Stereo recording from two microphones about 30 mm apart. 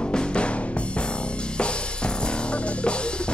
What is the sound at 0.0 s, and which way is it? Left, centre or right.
Music, left.